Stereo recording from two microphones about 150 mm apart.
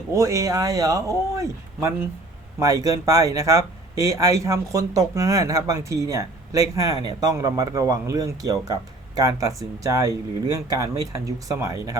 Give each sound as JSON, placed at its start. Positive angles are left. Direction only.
{"t": 0.1, "sound": "speech", "side_deg": -20}